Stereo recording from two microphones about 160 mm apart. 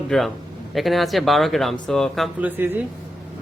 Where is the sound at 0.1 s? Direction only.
Centre (ahead or behind).